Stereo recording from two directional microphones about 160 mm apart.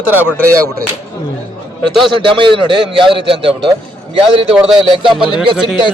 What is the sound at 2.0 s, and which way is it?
A man's voice, 30° right (ahead or behind).